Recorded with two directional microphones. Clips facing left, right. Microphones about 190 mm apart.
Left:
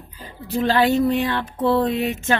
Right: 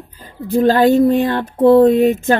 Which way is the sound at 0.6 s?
50° right (ahead or behind).